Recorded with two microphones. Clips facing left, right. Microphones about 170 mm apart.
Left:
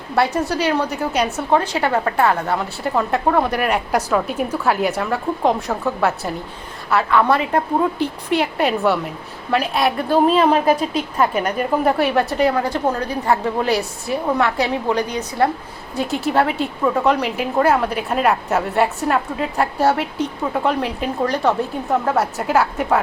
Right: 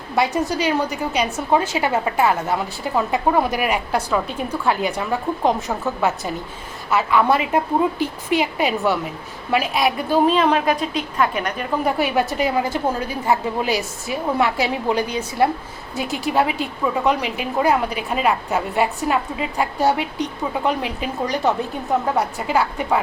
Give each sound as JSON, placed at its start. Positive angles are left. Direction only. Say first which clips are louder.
{"t": 0.2, "sound": "a woman's voice", "louder": "left 1 dB", "side_deg": 0}
{"t": 3.9, "sound": "a woman's voice", "louder": "left 3 dB", "side_deg": 5}
{"t": 10.5, "sound": "a woman's voice", "louder": "left 3 dB", "side_deg": 35}
{"t": 11.9, "sound": "a woman's voice", "louder": "even", "side_deg": -5}